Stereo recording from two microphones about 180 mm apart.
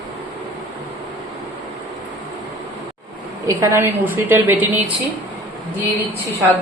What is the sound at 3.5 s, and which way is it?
A woman's voice, 15° right (ahead or behind).